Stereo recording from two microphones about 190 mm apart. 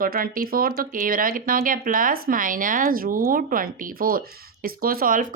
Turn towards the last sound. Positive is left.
turn(degrees=-45)  # may be behind; listen again after turning